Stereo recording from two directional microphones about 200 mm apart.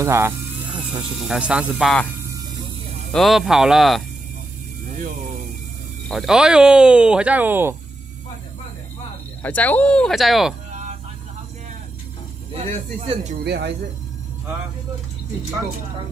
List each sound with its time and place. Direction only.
0.0 s speech: 15° right (ahead or behind)
2.2 s vehicle: 15° right (ahead or behind)
3.1 s speech: centre (ahead or behind)
4.8 s a sound: 40° right (ahead or behind)
6.0 s speech: centre (ahead or behind)
9.4 s speech: 10° left (ahead or behind)
10.7 s vehicle: 35° right (ahead or behind)
13.0 s speech: 30° right (ahead or behind)
13.4 s speech: 55° right (ahead or behind)